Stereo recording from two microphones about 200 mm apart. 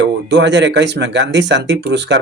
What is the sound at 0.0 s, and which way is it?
Speech, 60° right (ahead or behind).